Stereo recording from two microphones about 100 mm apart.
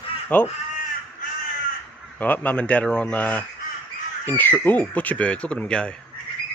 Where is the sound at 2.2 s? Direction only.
15° left (ahead or behind).